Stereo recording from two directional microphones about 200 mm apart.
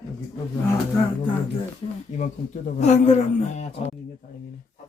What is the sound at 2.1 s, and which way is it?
A man's voice, 40° left (ahead or behind).